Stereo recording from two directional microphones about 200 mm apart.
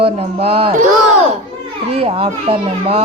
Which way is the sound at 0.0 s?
30° right (ahead or behind).